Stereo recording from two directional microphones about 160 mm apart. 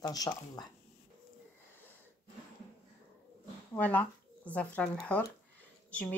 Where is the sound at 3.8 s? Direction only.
10° left (ahead or behind).